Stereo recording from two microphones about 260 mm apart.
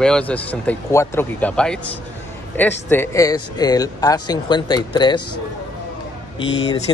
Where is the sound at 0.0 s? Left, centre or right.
Centre.